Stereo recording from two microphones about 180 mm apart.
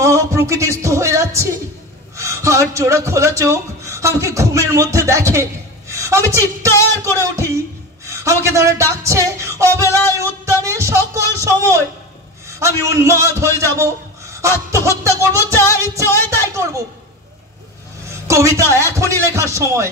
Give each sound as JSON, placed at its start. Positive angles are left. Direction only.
{"t": 0.0, "sound": "a sound", "side_deg": -15}
{"t": 0.8, "sound": "a man's voice", "side_deg": -15}
{"t": 8.0, "sound": "music", "side_deg": -15}
{"t": 9.8, "sound": "music", "side_deg": 15}
{"t": 10.1, "sound": "music", "side_deg": -15}
{"t": 11.3, "sound": "a man's voice", "side_deg": -15}
{"t": 13.7, "sound": "a sound", "side_deg": -15}
{"t": 14.7, "sound": "a man's voice", "side_deg": -15}
{"t": 15.5, "sound": "music", "side_deg": 15}
{"t": 16.5, "sound": "a woman's voice", "side_deg": -15}
{"t": 18.0, "sound": "a man's voice", "side_deg": -15}